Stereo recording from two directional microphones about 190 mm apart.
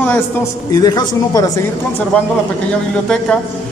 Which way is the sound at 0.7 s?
20° left (ahead or behind).